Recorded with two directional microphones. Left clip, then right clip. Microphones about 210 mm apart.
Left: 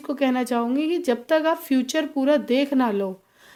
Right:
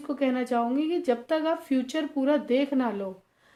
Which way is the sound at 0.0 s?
50° left (ahead or behind).